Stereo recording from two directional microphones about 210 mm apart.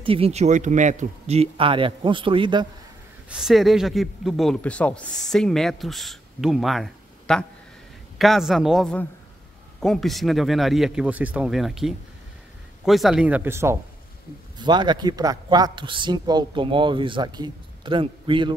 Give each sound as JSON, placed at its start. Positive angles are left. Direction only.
{"t": 0.0, "sound": "a man's voice", "side_deg": -25}
{"t": 3.3, "sound": "a man's voice", "side_deg": 0}